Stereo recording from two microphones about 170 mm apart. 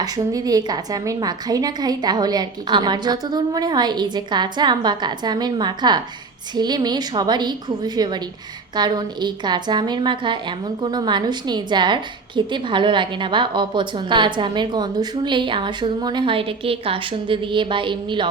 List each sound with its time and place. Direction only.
0.0 s a woman's voice: 20° right (ahead or behind)